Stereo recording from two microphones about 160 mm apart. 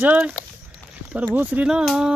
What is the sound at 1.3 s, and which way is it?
Speech, 5° right (ahead or behind).